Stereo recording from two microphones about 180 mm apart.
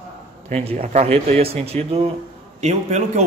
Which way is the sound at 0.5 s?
35° right (ahead or behind).